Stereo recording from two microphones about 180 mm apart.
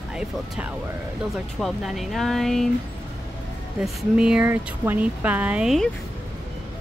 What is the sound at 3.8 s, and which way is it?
Speech, 5° right (ahead or behind).